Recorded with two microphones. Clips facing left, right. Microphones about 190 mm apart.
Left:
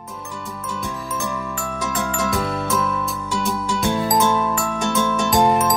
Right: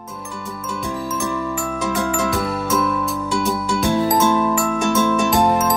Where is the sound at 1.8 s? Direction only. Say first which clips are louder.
Right 3 dB; 10° right (ahead or behind).